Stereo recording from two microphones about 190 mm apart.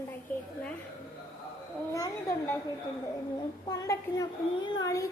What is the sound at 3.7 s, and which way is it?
A child's voice, 20° left (ahead or behind).